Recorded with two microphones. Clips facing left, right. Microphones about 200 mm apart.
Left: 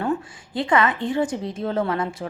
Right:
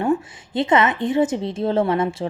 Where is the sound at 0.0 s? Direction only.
20° right (ahead or behind).